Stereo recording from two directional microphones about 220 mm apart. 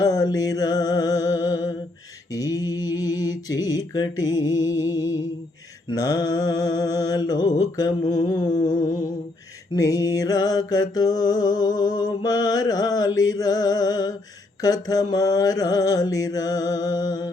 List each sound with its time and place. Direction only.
0.0 s music: 15° left (ahead or behind)
2.3 s mantra: 15° left (ahead or behind)